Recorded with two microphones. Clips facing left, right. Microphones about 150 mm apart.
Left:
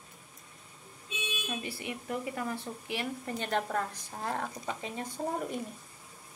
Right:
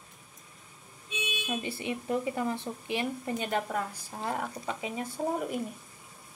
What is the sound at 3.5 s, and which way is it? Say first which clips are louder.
Speech: left 2 dB; 5° right (ahead or behind).